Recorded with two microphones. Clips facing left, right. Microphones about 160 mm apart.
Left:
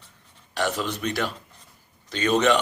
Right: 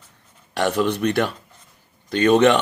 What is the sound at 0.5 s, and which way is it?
Speech, 55° right (ahead or behind).